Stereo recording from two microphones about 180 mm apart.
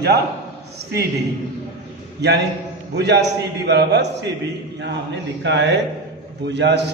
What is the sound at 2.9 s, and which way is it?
A man's voice, 70° right (ahead or behind).